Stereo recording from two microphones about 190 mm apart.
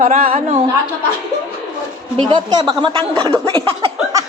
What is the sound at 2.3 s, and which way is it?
Speech, 20° right (ahead or behind).